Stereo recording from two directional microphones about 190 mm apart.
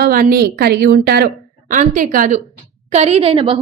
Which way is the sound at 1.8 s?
45° right (ahead or behind).